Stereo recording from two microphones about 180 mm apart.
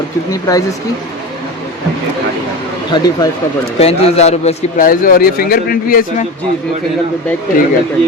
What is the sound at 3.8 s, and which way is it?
A man's voice, 35° left (ahead or behind).